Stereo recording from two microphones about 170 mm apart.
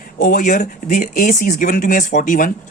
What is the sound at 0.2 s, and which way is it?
Speech, 50° left (ahead or behind).